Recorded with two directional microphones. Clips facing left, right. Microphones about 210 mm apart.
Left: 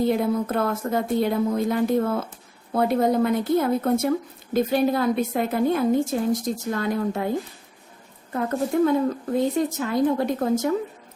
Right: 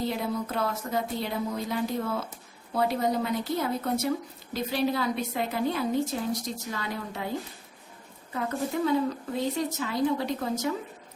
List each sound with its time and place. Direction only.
0.1 s a woman's voice: 50° left (ahead or behind)
8.3 s a woman's voice: 50° left (ahead or behind)